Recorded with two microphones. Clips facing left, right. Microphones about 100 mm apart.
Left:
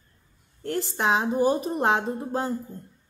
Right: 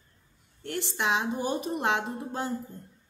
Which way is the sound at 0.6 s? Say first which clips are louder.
Left 5 dB; 40° left (ahead or behind).